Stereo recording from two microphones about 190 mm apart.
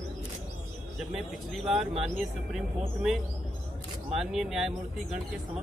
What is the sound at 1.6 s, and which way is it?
Speech, centre (ahead or behind).